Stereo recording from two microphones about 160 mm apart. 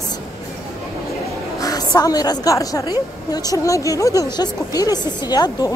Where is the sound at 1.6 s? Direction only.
25° left (ahead or behind).